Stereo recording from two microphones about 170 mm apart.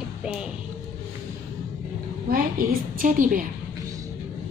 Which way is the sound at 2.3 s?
60° right (ahead or behind).